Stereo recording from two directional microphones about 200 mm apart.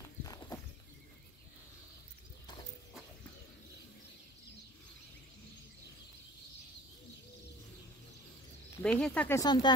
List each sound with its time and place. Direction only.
0.2 s horse: 15° left (ahead or behind)
8.8 s speech: 5° left (ahead or behind)
9.4 s speech: 20° left (ahead or behind)